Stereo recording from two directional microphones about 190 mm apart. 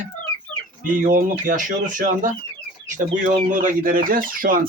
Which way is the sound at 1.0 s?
45° right (ahead or behind).